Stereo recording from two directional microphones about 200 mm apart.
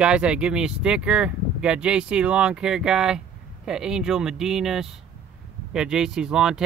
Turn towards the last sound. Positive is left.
turn(degrees=-5)  # may be behind; listen again after turning